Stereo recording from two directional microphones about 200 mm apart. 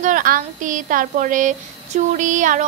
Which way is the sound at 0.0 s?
40° right (ahead or behind).